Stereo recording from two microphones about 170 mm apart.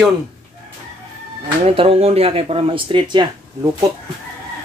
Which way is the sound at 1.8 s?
35° right (ahead or behind).